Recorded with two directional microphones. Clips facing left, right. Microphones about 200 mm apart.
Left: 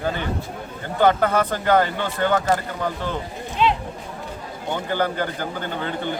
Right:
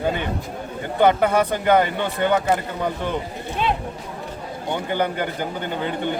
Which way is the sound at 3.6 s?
50° right (ahead or behind).